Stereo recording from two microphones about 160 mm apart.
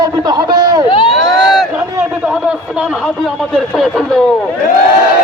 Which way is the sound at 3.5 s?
Centre (ahead or behind).